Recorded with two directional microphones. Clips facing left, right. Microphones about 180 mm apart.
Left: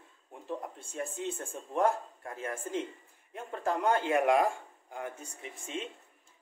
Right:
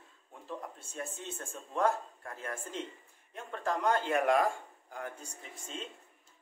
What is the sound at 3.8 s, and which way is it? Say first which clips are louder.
Speech: left 2 dB; 10° left (ahead or behind).